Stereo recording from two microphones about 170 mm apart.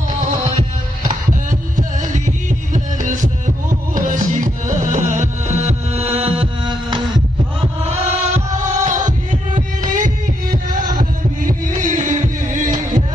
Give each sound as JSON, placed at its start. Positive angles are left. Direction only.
{"t": 1.5, "sound": "music", "side_deg": -50}